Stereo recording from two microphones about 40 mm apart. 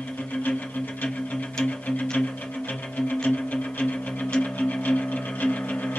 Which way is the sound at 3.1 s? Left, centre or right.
Left.